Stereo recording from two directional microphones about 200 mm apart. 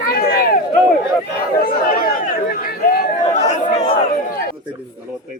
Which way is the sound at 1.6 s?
45° left (ahead or behind).